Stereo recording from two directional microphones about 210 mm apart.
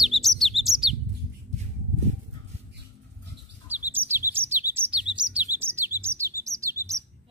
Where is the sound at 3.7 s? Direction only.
10° right (ahead or behind).